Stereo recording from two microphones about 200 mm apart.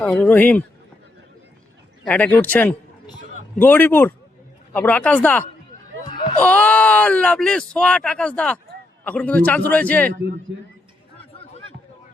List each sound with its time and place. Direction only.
0.0 s speech: 10° left (ahead or behind)
2.0 s speech: 5° left (ahead or behind)
10.1 s a man's voice: 45° right (ahead or behind)